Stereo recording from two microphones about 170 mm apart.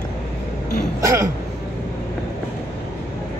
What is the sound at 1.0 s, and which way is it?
Throat clearing, 20° right (ahead or behind).